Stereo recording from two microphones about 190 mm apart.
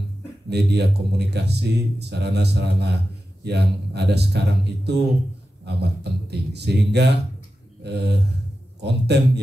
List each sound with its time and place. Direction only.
0.5 s speech: 60° right (ahead or behind)